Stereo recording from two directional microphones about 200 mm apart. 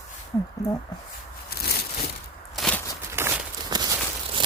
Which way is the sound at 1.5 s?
50° left (ahead or behind).